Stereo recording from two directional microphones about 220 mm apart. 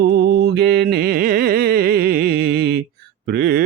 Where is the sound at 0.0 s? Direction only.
50° right (ahead or behind).